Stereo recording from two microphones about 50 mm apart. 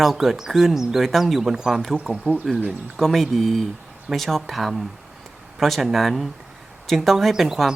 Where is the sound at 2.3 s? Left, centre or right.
Right.